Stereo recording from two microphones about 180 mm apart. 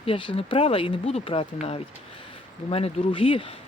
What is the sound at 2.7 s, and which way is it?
Speech, 30° left (ahead or behind).